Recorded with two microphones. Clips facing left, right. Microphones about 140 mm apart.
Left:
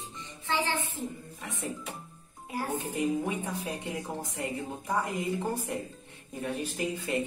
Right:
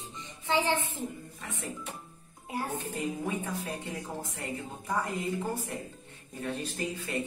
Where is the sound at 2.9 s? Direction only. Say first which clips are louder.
Left 5 dB; 15° left (ahead or behind).